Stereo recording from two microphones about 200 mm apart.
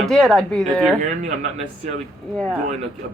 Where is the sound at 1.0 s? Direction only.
35° right (ahead or behind).